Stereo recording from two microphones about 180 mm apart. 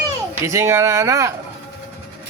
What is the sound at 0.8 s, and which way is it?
Speech, 15° right (ahead or behind).